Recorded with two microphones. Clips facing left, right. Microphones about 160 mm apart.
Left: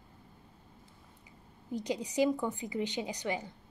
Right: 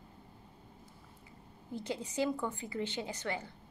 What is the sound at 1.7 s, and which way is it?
A woman's voice, 15° left (ahead or behind).